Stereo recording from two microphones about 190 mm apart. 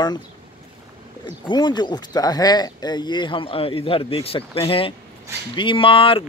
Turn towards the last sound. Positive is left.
turn(degrees=30)  # may be behind; listen again after turning